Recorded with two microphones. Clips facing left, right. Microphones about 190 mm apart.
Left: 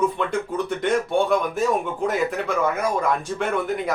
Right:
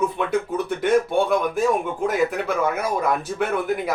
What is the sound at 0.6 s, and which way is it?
Speech, centre (ahead or behind).